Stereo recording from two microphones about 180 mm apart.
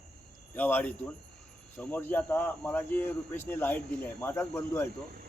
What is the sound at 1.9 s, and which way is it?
Speech, 10° left (ahead or behind).